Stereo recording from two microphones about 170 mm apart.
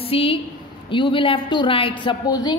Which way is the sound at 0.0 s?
35° left (ahead or behind).